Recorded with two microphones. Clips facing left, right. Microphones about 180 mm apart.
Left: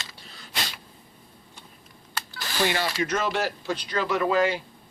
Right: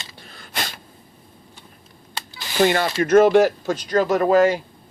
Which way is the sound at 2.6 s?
50° right (ahead or behind).